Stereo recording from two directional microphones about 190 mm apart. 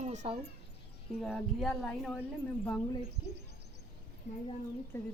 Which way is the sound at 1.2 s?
Centre (ahead or behind).